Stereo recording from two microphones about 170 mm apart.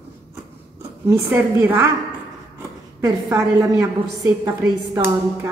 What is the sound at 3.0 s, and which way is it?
A woman's voice, 20° right (ahead or behind).